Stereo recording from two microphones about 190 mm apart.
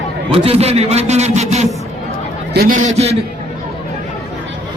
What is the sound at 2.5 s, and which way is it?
Speech, 50° right (ahead or behind).